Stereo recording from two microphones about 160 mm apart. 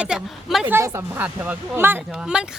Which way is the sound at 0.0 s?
5° right (ahead or behind).